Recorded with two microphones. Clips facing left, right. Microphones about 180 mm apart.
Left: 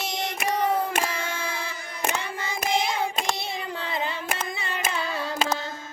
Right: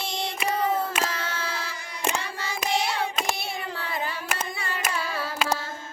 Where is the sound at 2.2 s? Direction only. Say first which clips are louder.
Left 1 dB; 20° left (ahead or behind).